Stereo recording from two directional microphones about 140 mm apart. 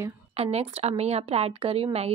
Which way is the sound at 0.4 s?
45° right (ahead or behind).